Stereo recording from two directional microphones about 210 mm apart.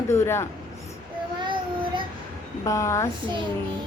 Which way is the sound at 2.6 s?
15° left (ahead or behind).